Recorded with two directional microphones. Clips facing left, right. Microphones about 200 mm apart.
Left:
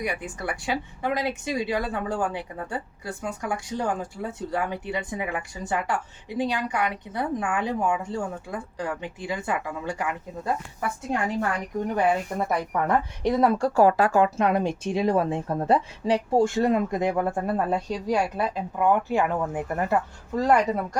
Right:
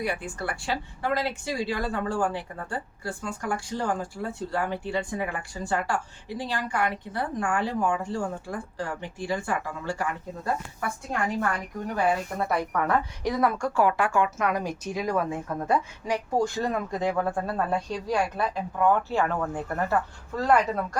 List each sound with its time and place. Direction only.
0.0 s speech: 15° left (ahead or behind)
12.7 s speech: 20° left (ahead or behind)